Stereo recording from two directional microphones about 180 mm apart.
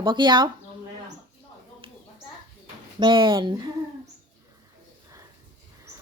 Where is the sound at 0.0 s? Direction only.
25° right (ahead or behind).